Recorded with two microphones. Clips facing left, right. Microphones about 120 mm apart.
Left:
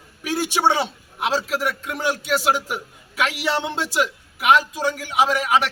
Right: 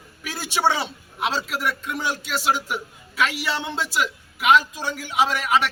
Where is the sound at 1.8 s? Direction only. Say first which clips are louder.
Left 4 dB; 15° left (ahead or behind).